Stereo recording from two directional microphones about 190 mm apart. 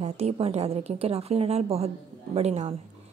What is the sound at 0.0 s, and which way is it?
A woman's voice, 30° right (ahead or behind).